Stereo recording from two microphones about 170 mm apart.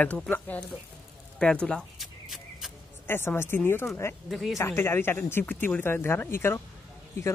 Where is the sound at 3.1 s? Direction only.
15° left (ahead or behind).